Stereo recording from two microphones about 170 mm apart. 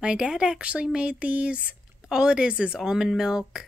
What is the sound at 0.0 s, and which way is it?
Speech, 5° right (ahead or behind).